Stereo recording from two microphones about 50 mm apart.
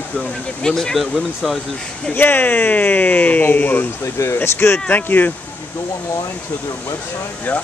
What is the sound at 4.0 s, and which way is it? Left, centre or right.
Speech, left.